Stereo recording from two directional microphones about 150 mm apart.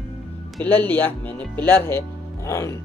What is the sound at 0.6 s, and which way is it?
Speech, 10° left (ahead or behind).